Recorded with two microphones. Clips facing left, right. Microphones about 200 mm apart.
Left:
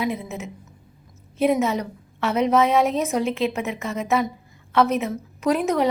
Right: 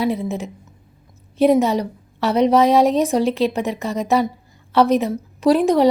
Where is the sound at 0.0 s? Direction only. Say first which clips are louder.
Right 5 dB; 35° right (ahead or behind).